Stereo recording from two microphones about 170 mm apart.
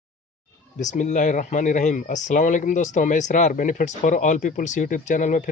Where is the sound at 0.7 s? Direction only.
45° left (ahead or behind).